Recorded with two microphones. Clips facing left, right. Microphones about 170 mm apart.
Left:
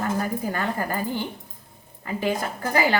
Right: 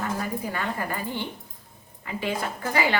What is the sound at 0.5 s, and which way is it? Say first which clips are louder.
A woman's voice: left 3 dB; 40° left (ahead or behind).